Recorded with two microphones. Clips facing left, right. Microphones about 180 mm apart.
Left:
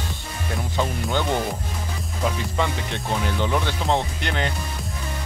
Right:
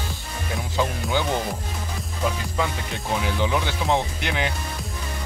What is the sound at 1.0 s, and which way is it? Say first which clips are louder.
Speech: left 1 dB; centre (ahead or behind).